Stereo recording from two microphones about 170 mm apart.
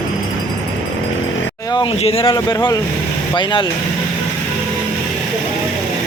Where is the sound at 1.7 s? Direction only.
35° left (ahead or behind).